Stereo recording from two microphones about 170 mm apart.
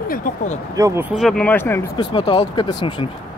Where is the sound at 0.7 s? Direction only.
15° right (ahead or behind).